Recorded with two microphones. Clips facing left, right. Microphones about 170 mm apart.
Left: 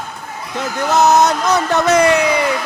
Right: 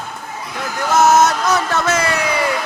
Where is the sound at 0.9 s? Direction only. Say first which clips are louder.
Even; 20° left (ahead or behind).